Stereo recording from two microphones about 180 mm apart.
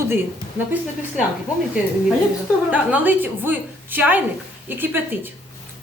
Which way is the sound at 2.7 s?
10° right (ahead or behind).